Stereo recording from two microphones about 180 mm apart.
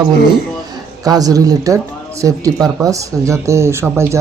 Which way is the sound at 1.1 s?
20° right (ahead or behind).